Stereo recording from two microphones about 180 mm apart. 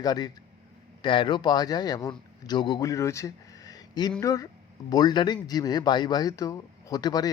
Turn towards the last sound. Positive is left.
turn(degrees=20)  # may be behind; listen again after turning